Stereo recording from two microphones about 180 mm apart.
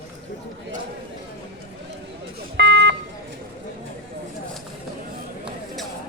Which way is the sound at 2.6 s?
70° right (ahead or behind).